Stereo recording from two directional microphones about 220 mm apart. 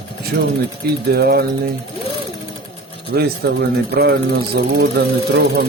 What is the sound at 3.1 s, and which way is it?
Speech, 45° right (ahead or behind).